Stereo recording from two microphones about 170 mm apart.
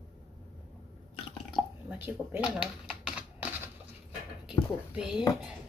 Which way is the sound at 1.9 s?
10° right (ahead or behind).